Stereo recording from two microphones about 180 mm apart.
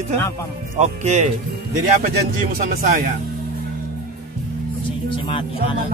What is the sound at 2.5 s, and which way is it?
Speech, 50° right (ahead or behind).